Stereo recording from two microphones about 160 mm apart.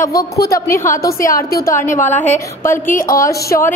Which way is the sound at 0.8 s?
65° left (ahead or behind).